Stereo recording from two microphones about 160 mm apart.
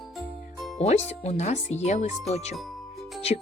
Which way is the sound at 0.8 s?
45° left (ahead or behind).